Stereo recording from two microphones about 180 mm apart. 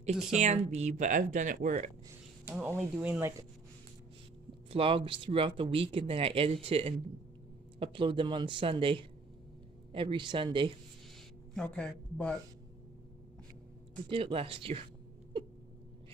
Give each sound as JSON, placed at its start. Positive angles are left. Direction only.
{"t": 0.4, "sound": "speech", "side_deg": -40}
{"t": 2.4, "sound": "speech", "side_deg": -10}
{"t": 4.6, "sound": "speech", "side_deg": -30}
{"t": 11.5, "sound": "speech", "side_deg": 5}
{"t": 14.0, "sound": "speech", "side_deg": -30}